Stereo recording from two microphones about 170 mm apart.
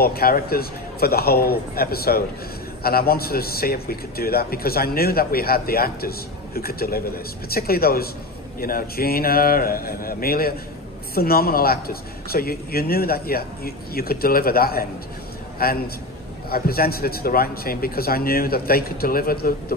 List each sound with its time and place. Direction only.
0.0 s a man's voice: 65° left (ahead or behind)